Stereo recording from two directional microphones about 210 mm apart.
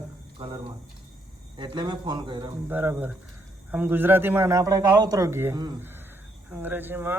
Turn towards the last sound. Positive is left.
turn(degrees=-10)  # may be behind; listen again after turning